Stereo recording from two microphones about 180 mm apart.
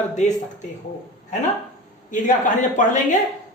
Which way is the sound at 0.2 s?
40° left (ahead or behind).